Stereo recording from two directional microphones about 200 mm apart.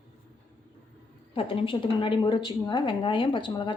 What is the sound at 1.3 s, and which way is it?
Speech, 25° left (ahead or behind).